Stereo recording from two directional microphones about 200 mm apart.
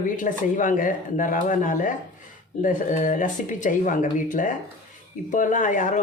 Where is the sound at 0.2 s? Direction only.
40° left (ahead or behind).